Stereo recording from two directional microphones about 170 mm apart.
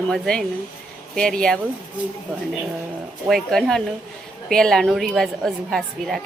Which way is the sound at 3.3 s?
Centre (ahead or behind).